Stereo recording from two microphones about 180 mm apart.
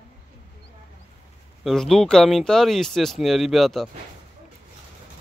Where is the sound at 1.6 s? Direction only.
Centre (ahead or behind).